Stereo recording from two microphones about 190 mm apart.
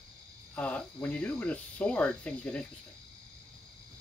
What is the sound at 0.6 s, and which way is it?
Speech, 10° left (ahead or behind).